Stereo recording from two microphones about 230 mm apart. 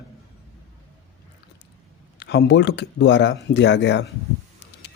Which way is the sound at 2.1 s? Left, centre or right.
Left.